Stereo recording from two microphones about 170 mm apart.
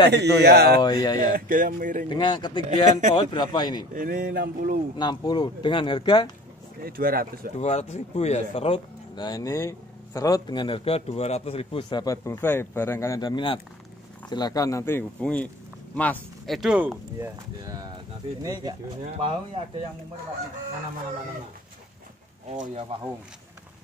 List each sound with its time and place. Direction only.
0.1 s speech: 75° right (ahead or behind)
0.7 s a man's voice: 25° left (ahead or behind)
1.3 s a sound: 55° right (ahead or behind)
2.0 s a man's voice: 25° left (ahead or behind)
2.7 s speech: 45° right (ahead or behind)
3.2 s a man's voice: 25° left (ahead or behind)
3.9 s a sound: 55° right (ahead or behind)
4.9 s a man's voice: 25° left (ahead or behind)
6.8 s a sound: 60° right (ahead or behind)
7.5 s a man's voice: 40° left (ahead or behind); by 18.8 s 20° right (ahead or behind)
19.0 s speech: 35° right (ahead or behind)
22.9 s speech: 30° right (ahead or behind)